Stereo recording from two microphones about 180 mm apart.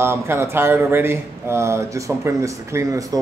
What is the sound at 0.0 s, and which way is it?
Speech, 15° right (ahead or behind).